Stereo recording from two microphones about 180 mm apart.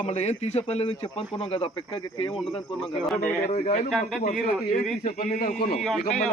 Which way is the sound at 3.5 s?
35° left (ahead or behind).